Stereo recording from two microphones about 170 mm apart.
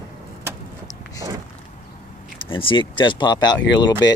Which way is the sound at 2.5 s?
30° left (ahead or behind).